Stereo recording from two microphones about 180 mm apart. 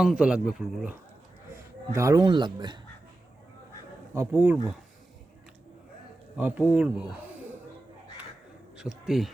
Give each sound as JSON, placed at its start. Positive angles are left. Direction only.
{"t": 0.0, "sound": "speech", "side_deg": -5}
{"t": 1.9, "sound": "speech", "side_deg": -15}
{"t": 4.1, "sound": "speech", "side_deg": -10}
{"t": 6.3, "sound": "speech", "side_deg": -10}
{"t": 8.8, "sound": "speech", "side_deg": 0}